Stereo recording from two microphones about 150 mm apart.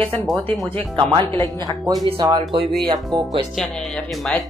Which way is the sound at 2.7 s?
Centre (ahead or behind).